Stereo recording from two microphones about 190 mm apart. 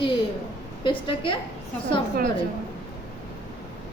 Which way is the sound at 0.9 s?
25° left (ahead or behind).